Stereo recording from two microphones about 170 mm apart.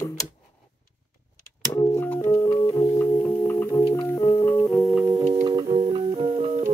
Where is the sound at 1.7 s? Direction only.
15° left (ahead or behind).